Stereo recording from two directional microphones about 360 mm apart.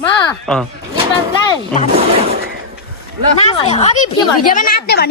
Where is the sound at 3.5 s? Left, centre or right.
Centre.